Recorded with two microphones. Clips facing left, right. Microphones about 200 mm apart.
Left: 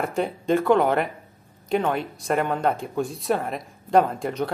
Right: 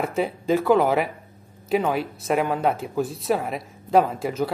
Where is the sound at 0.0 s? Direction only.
Centre (ahead or behind).